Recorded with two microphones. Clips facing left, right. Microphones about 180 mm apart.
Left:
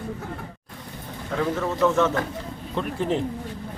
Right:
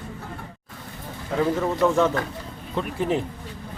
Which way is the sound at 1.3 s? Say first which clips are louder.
Right 2 dB; 20° right (ahead or behind).